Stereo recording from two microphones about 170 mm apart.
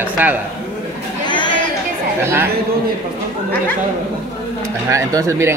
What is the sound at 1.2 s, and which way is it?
Chatter, 25° left (ahead or behind).